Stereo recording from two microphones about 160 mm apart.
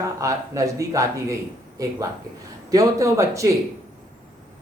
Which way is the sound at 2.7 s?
20° right (ahead or behind).